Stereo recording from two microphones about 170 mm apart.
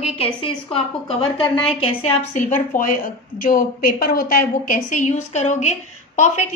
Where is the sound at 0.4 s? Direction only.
30° left (ahead or behind).